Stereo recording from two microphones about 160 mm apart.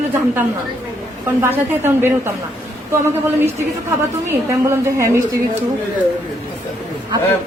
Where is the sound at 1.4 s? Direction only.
15° right (ahead or behind).